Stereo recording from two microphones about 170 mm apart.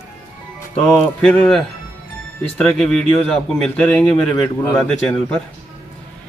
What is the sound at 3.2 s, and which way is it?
A man's voice, 5° left (ahead or behind).